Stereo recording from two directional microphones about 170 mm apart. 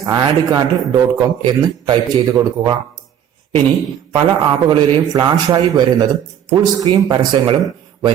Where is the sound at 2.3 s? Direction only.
20° right (ahead or behind).